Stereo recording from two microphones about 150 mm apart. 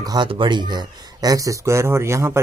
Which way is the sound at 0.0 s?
30° right (ahead or behind).